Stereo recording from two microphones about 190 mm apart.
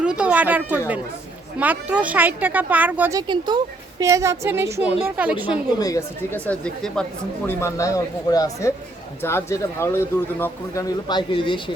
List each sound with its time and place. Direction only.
0.0 s speech: 5° right (ahead or behind)
5.8 s a man's voice: 15° left (ahead or behind)
7.4 s a man's voice: 15° left (ahead or behind)